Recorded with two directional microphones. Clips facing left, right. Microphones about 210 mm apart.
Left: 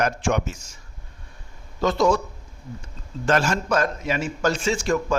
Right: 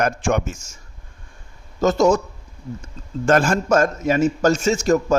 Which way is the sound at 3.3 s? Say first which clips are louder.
Right 5 dB; 50° right (ahead or behind).